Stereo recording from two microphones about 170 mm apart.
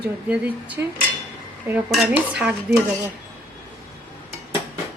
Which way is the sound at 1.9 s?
5° right (ahead or behind).